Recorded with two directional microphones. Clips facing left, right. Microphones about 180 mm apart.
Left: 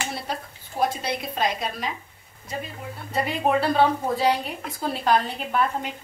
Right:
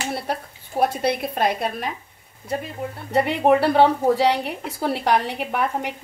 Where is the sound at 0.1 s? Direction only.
60° right (ahead or behind).